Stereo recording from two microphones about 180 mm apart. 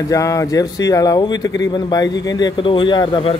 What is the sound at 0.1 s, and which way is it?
Speech, 20° left (ahead or behind).